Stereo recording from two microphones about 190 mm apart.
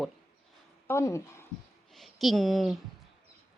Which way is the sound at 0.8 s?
15° left (ahead or behind).